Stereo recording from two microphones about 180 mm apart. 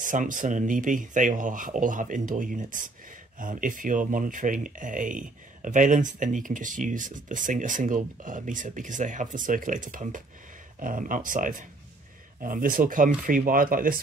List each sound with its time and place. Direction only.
0.0 s speech: 50° right (ahead or behind)